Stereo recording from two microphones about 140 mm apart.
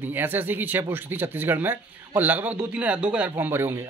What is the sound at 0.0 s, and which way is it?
A man's voice, 15° right (ahead or behind).